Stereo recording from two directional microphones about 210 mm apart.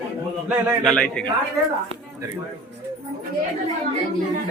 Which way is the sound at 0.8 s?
5° left (ahead or behind).